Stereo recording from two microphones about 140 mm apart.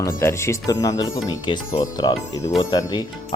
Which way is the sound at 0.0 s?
20° left (ahead or behind).